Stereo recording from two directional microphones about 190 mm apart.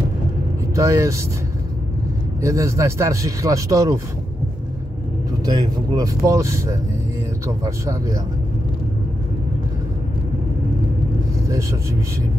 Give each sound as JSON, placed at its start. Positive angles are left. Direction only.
{"t": 0.7, "sound": "speech", "side_deg": -15}
{"t": 2.4, "sound": "speech", "side_deg": -15}
{"t": 5.4, "sound": "speech", "side_deg": -20}
{"t": 11.4, "sound": "speech", "side_deg": -15}